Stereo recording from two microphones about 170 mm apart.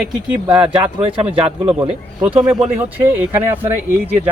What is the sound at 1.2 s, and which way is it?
Speech, 5° right (ahead or behind).